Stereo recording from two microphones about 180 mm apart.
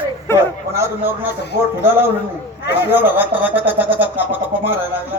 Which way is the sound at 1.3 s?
70° left (ahead or behind).